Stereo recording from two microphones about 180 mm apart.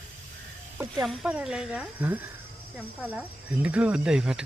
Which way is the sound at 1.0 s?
5° right (ahead or behind).